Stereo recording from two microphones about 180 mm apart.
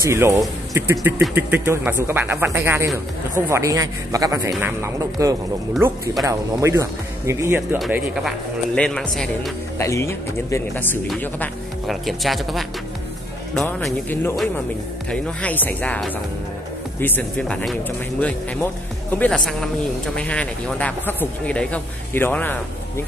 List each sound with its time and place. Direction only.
0.0 s a man's voice: 15° right (ahead or behind)
7.9 s speech: centre (ahead or behind)
9.8 s speech: 15° left (ahead or behind)